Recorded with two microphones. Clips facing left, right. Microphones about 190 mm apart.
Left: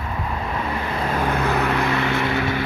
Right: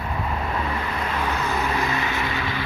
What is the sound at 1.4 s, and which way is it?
Vehicle, 65° left (ahead or behind).